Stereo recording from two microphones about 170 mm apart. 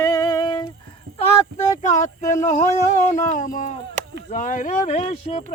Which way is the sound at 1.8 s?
45° left (ahead or behind).